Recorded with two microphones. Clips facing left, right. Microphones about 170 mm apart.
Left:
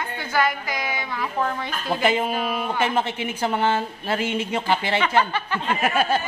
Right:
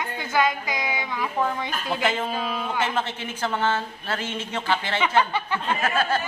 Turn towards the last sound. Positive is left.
turn(degrees=15)  # may be behind; listen again after turning